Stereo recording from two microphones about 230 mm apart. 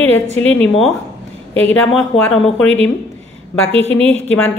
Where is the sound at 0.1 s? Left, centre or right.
Left.